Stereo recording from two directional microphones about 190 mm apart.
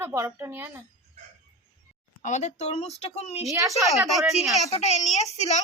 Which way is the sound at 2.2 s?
35° left (ahead or behind).